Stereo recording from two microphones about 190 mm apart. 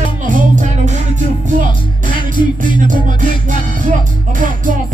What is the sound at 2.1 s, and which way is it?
Music, 25° left (ahead or behind).